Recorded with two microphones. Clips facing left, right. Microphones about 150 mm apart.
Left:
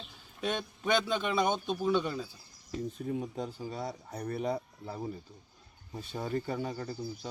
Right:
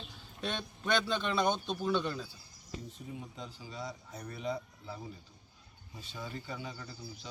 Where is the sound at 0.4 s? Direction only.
5° left (ahead or behind).